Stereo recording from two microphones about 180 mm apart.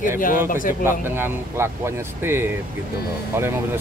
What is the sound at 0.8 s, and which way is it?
Speech, 10° right (ahead or behind).